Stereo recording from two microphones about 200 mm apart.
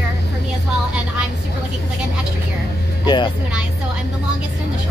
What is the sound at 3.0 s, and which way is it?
Speech, 20° left (ahead or behind).